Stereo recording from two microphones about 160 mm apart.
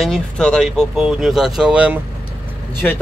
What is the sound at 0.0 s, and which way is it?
Speech, 5° left (ahead or behind).